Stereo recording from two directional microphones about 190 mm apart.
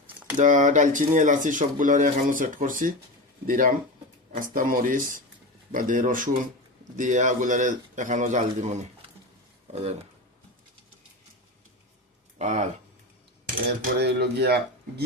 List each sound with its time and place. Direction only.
0.3 s a man's voice: 40° right (ahead or behind)
12.4 s speech: 40° right (ahead or behind)
13.8 s speech: 60° right (ahead or behind)